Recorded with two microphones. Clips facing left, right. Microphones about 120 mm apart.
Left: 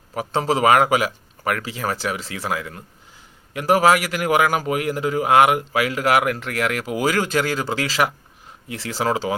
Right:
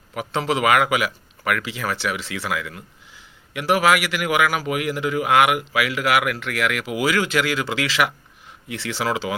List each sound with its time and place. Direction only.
0.1 s a man's voice: 35° left (ahead or behind)